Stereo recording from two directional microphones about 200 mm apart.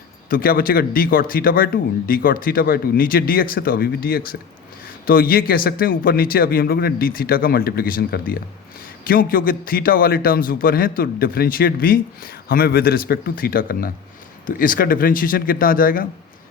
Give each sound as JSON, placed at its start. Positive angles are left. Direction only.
{"t": 0.3, "sound": "a man's voice", "side_deg": 45}